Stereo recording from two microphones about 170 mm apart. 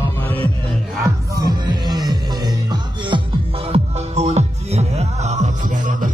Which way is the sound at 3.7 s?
40° right (ahead or behind).